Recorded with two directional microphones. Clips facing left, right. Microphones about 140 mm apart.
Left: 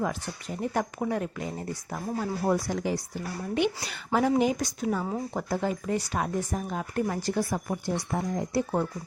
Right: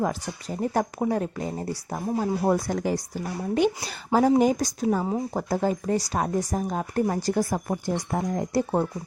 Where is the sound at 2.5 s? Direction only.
50° right (ahead or behind).